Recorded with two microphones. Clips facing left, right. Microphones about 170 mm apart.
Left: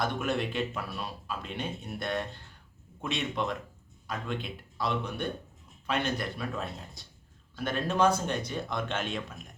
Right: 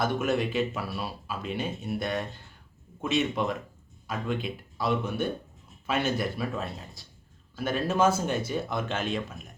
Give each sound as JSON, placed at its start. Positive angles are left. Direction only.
{"t": 0.0, "sound": "speech", "side_deg": 0}